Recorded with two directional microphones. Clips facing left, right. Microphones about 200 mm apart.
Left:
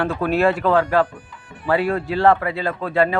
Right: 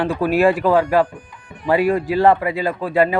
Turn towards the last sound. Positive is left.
turn(degrees=-15)  # may be behind; listen again after turning